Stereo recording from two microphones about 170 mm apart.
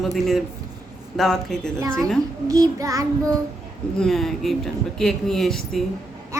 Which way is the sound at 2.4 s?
20° right (ahead or behind).